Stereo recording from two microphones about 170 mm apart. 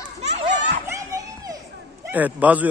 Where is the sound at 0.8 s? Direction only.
20° right (ahead or behind).